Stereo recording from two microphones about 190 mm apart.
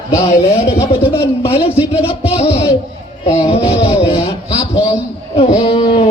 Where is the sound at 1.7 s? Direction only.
10° right (ahead or behind).